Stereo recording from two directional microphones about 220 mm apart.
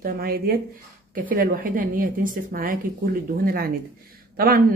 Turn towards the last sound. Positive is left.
turn(degrees=-45)  # may be behind; listen again after turning